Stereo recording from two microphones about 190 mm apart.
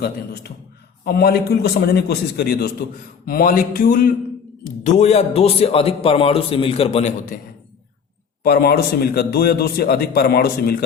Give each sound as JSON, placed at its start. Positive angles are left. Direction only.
{"t": 0.0, "sound": "a man's voice", "side_deg": 60}
{"t": 4.9, "sound": "a man's voice", "side_deg": 35}
{"t": 7.3, "sound": "a man's voice", "side_deg": 45}